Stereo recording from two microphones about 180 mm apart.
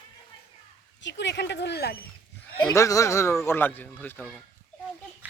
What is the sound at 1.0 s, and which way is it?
Speech, 75° left (ahead or behind).